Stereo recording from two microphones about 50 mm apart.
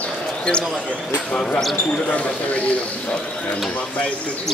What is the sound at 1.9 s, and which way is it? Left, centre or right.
Speech, left.